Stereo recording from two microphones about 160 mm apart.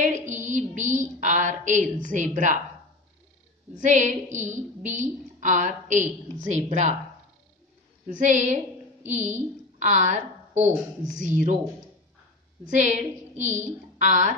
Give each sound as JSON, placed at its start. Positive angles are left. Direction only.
{"t": 0.0, "sound": "a woman's voice", "side_deg": -50}
{"t": 3.7, "sound": "a woman's voice", "side_deg": -50}
{"t": 8.1, "sound": "a woman's voice", "side_deg": -50}
{"t": 12.6, "sound": "a woman's voice", "side_deg": -50}